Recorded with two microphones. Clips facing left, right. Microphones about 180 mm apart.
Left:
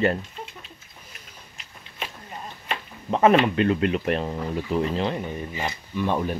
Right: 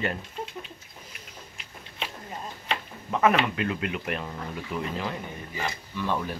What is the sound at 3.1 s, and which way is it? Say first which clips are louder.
Speech: left 5 dB; 30° left (ahead or behind).